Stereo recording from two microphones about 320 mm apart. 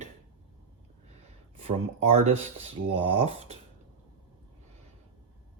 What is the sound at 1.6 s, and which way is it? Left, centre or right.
Speech, centre.